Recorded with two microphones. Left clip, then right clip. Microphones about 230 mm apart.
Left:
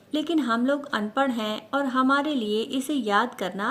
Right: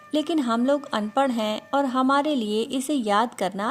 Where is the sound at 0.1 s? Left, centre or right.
Right.